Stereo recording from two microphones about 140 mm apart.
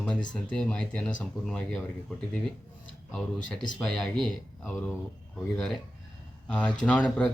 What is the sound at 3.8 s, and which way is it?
Speech, centre (ahead or behind).